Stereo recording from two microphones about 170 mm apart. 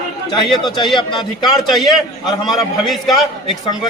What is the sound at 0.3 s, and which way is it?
A man's voice, 25° left (ahead or behind).